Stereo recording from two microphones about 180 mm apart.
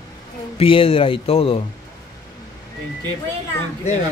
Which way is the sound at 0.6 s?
30° left (ahead or behind).